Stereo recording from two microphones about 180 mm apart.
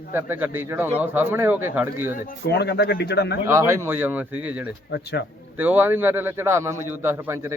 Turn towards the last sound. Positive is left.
turn(degrees=-15)  # may be behind; listen again after turning